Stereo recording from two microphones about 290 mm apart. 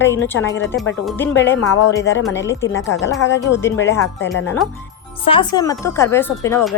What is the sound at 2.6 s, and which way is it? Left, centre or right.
Speech, left.